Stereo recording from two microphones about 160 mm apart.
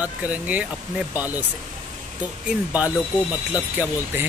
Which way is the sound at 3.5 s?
10° right (ahead or behind).